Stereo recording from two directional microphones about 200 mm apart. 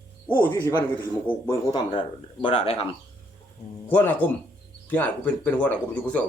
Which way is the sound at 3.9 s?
5° left (ahead or behind).